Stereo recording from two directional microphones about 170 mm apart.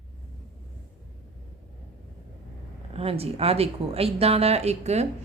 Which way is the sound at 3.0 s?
35° right (ahead or behind).